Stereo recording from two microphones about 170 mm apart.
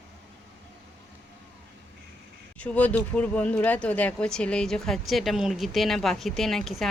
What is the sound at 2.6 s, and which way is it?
Speech, 10° left (ahead or behind).